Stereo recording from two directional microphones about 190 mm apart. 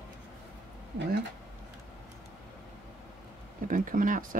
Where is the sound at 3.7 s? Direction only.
45° right (ahead or behind).